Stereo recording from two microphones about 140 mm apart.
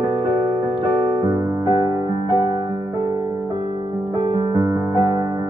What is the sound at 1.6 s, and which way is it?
Music, 30° right (ahead or behind).